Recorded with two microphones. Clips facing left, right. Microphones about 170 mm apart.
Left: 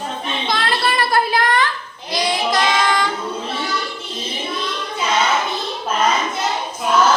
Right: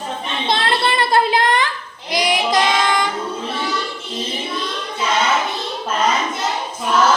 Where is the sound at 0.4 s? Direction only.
25° right (ahead or behind).